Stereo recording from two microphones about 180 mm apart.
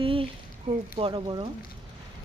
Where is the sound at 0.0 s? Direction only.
30° right (ahead or behind).